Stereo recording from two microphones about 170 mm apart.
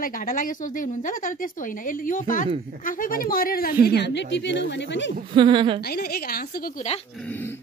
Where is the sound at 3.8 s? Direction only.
80° left.